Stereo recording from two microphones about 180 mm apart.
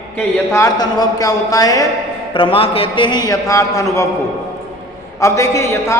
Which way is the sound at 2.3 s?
30° left (ahead or behind).